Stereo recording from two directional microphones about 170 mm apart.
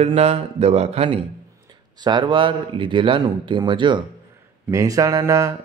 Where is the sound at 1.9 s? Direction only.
25° right (ahead or behind).